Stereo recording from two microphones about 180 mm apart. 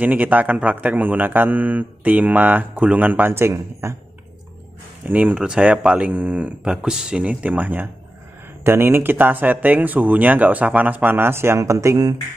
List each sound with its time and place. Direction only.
0.0 s speech: 10° right (ahead or behind)
5.0 s speech: 10° right (ahead or behind)